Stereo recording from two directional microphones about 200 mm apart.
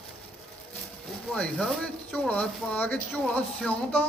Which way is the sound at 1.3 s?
5° left (ahead or behind).